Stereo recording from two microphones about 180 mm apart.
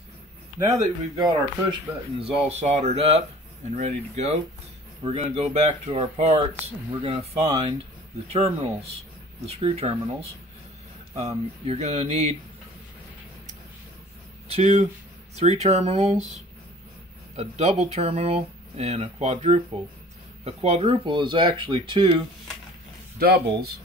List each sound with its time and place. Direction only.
0.6 s speech: 20° right (ahead or behind)
11.1 s speech: 35° right (ahead or behind)
14.5 s speech: 40° right (ahead or behind)
17.4 s speech: 35° right (ahead or behind)
23.1 s speech: 55° right (ahead or behind)